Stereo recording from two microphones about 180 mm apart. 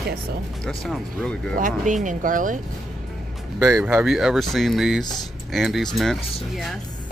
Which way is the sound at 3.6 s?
15° right (ahead or behind).